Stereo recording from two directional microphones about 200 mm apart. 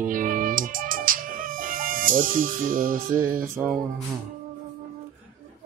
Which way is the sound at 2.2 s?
45° right (ahead or behind).